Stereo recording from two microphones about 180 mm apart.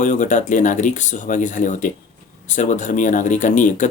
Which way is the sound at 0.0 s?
45° left (ahead or behind).